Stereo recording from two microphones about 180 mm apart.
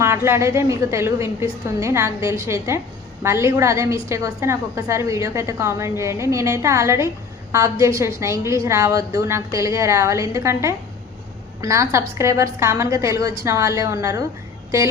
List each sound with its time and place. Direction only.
0.3 s a woman's voice: 15° right (ahead or behind)